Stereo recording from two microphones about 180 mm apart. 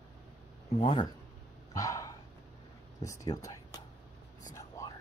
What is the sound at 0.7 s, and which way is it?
Speech, 30° left (ahead or behind).